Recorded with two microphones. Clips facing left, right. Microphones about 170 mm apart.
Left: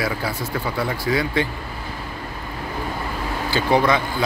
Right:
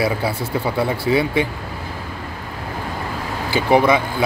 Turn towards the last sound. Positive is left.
turn(degrees=-20)  # may be behind; listen again after turning